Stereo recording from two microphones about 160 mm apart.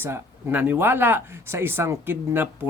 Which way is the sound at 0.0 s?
15° right (ahead or behind).